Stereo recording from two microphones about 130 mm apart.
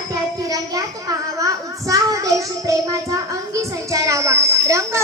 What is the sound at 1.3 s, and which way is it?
Child singing, 25° right (ahead or behind).